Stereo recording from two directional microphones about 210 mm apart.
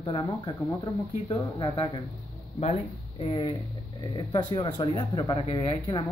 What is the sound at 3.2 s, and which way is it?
Speech, 25° left (ahead or behind).